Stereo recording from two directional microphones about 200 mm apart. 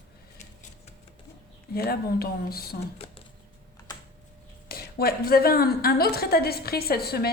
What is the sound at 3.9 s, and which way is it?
Typing, 20° left (ahead or behind).